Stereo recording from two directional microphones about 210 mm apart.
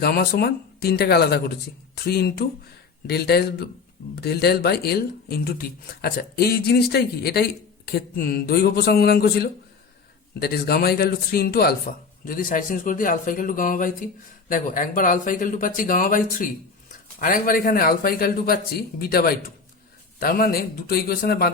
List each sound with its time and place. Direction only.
0.0 s speech: 45° left (ahead or behind)